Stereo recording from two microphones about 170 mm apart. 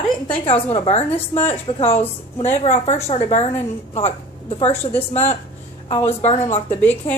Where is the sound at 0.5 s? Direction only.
35° left (ahead or behind).